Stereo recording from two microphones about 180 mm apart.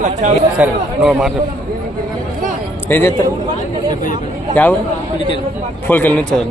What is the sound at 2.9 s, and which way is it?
Speech, 10° left (ahead or behind).